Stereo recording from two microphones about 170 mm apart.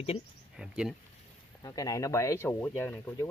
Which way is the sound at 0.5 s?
5° right (ahead or behind).